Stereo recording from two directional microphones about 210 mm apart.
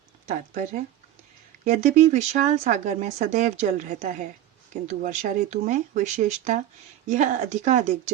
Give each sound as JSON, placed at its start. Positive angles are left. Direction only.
{"t": 0.3, "sound": "speech", "side_deg": -35}